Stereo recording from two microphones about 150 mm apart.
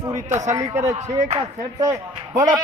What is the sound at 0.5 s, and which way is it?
Speech, 25° right (ahead or behind).